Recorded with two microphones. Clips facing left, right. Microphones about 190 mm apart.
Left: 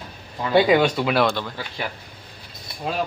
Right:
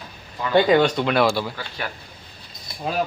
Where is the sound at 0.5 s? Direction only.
5° left (ahead or behind).